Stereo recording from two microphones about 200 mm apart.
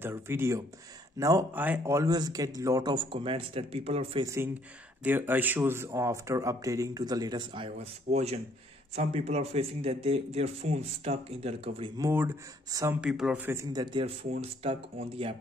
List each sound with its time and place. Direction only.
0.0 s speech: 10° right (ahead or behind); by 4.3 s 30° right (ahead or behind)
5.0 s speech: 10° right (ahead or behind); by 11.9 s 30° right (ahead or behind)
12.0 s speech: 10° right (ahead or behind)
14.4 s speech: 30° right (ahead or behind)